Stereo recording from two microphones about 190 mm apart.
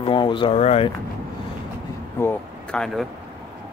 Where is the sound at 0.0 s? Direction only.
25° left (ahead or behind).